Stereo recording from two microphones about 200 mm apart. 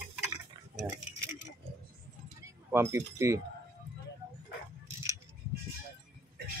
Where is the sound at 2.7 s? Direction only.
15° right (ahead or behind).